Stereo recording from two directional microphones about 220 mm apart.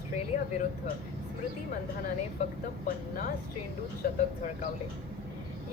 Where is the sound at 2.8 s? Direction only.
40° left (ahead or behind).